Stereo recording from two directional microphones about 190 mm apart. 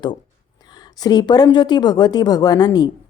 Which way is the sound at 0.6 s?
20° left (ahead or behind).